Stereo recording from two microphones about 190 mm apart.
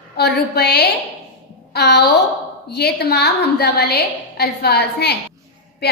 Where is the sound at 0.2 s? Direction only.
60° left (ahead or behind).